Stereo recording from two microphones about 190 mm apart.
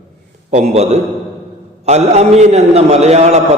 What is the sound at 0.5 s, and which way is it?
A man's voice, 35° right (ahead or behind).